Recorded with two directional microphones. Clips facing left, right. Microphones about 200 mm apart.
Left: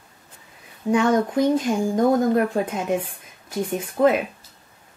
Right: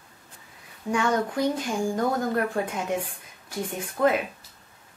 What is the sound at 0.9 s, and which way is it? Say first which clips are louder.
A woman's voice: left 6 dB; 20° left (ahead or behind).